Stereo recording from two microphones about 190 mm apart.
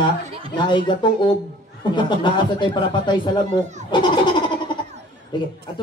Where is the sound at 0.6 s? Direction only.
25° left (ahead or behind).